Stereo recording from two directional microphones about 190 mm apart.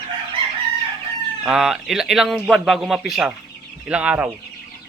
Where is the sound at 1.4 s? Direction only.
Centre (ahead or behind).